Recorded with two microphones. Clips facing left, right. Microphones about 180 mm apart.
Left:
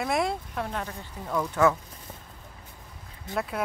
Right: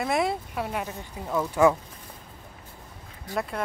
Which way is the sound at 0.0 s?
Centre (ahead or behind).